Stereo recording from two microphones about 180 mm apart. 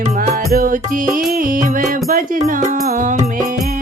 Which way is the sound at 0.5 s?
50° right (ahead or behind).